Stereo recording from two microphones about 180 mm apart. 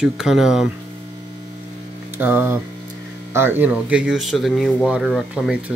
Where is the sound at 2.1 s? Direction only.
10° right (ahead or behind).